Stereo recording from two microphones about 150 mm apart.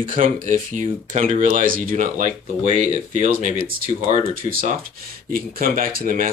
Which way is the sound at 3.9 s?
45° right (ahead or behind).